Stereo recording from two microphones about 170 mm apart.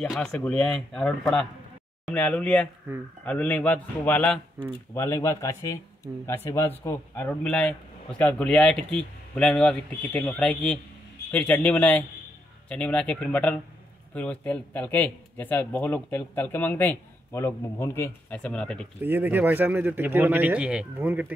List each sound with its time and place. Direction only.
0.0 s a man's voice: 5° left (ahead or behind)
4.6 s speech: 15° right (ahead or behind)
4.9 s a man's voice: 15° left (ahead or behind)
18.9 s speech: 10° right (ahead or behind)